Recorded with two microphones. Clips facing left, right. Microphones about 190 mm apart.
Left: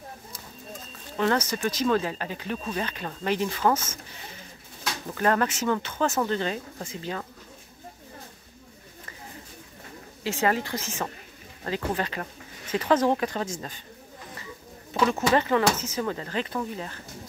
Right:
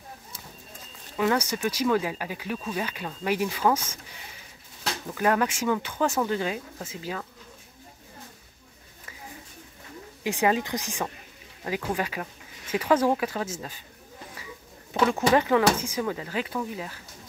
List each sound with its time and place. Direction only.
1.1 s speech: 10° right (ahead or behind)
5.1 s speech: 10° right (ahead or behind)
10.2 s speech: 15° right (ahead or behind)
15.3 s speech: 10° right (ahead or behind)